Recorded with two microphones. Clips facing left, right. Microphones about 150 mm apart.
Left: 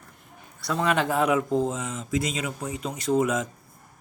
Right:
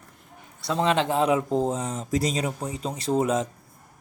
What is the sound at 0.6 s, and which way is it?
Speech, 25° right (ahead or behind).